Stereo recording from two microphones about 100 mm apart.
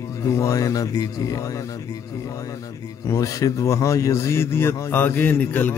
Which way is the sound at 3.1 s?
35° left (ahead or behind).